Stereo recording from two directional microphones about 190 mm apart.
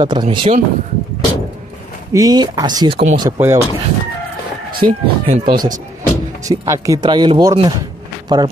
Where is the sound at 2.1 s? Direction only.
20° right (ahead or behind).